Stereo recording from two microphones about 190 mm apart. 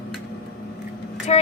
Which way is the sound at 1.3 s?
35° left (ahead or behind).